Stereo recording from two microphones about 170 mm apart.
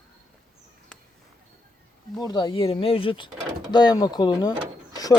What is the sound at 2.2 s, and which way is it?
Speech, 25° left (ahead or behind).